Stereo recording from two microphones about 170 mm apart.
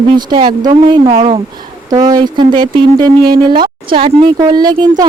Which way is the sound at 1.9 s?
25° right (ahead or behind).